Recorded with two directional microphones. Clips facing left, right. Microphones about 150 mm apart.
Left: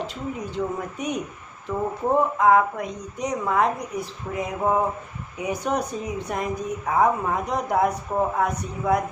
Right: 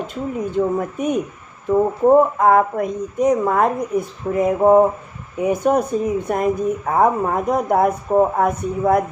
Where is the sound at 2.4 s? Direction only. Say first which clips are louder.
Right 3 dB; 50° right (ahead or behind).